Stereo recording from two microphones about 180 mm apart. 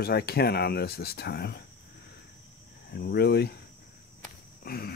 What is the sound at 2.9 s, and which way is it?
Speech, 60° left (ahead or behind).